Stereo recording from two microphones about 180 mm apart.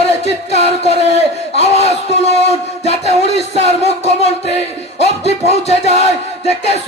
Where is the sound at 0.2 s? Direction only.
35° left (ahead or behind).